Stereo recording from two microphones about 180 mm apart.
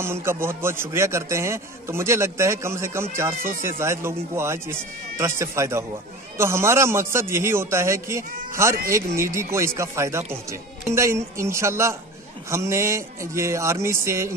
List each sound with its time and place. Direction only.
0.0 s a man's voice: 15° right (ahead or behind)